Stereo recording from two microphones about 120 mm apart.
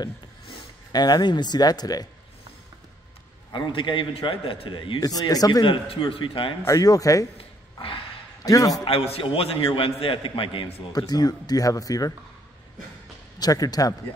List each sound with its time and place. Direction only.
0.9 s speech: 35° left (ahead or behind)
3.5 s a man's voice: 40° left (ahead or behind)
5.0 s a man's voice: 30° left (ahead or behind); by 6.5 s 45° left (ahead or behind)
6.6 s speech: 30° left (ahead or behind)
7.3 s a sound: 50° left (ahead or behind)
8.5 s speech: 30° left (ahead or behind)
8.8 s a man's voice: 55° left (ahead or behind)
10.9 s speech: 35° left (ahead or behind)
13.4 s speech: 30° left (ahead or behind)